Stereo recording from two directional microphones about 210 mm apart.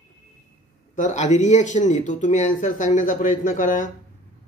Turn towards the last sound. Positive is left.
turn(degrees=40)  # may be behind; listen again after turning